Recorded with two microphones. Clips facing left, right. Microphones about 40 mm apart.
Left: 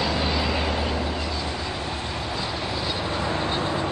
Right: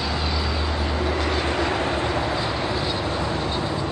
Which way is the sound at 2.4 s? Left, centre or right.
Right.